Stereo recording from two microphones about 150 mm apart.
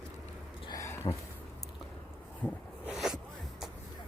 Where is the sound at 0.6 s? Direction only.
20° left (ahead or behind).